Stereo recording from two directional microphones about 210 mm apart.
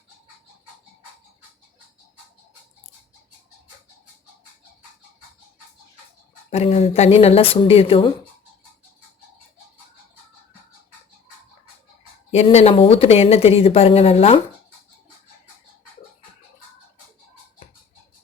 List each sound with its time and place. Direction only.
6.5 s speech: 30° left (ahead or behind)
12.3 s speech: 30° left (ahead or behind)